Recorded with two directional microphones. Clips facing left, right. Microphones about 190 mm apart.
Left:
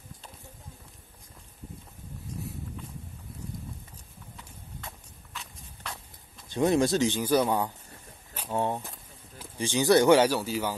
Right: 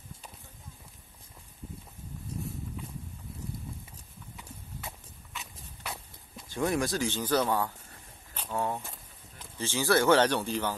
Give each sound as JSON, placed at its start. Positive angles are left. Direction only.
{"t": 4.4, "sound": "clip-clop", "side_deg": -10}
{"t": 6.5, "sound": "speech", "side_deg": 25}
{"t": 8.5, "sound": "speech", "side_deg": 25}